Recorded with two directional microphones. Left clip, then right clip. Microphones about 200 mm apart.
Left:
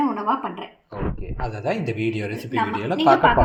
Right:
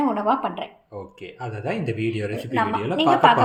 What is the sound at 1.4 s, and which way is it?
Speech, centre (ahead or behind).